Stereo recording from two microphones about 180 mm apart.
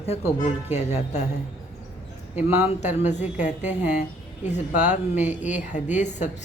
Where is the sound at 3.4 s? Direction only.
40° left (ahead or behind).